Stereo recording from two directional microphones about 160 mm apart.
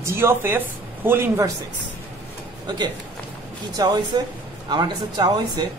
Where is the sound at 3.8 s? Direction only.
25° right (ahead or behind).